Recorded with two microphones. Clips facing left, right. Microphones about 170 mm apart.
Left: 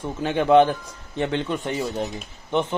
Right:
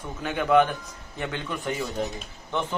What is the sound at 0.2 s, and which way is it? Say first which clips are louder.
A man's voice: left 5 dB; 30° left (ahead or behind).